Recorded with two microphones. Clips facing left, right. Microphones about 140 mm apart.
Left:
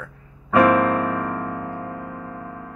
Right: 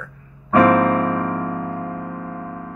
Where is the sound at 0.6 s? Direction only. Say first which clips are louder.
Right 2 dB; 25° right (ahead or behind).